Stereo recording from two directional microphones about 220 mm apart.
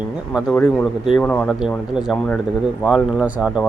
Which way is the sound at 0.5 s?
5° left (ahead or behind).